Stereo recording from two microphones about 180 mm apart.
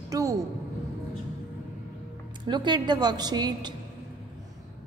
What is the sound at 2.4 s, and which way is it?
A woman's voice, 25° right (ahead or behind).